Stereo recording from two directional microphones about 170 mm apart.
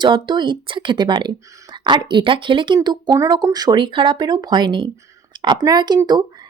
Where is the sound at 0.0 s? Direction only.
25° right (ahead or behind).